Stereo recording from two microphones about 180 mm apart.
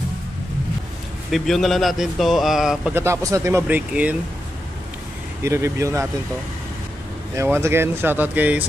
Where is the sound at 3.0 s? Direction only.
15° right (ahead or behind).